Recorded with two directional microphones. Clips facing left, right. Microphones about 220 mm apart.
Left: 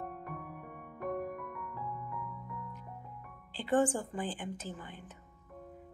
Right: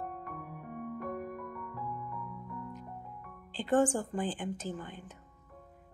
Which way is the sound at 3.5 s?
45° right (ahead or behind).